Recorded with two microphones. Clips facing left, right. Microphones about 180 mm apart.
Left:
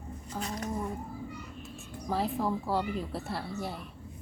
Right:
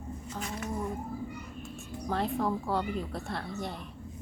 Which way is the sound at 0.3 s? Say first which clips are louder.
Left 2 dB; 35° left (ahead or behind).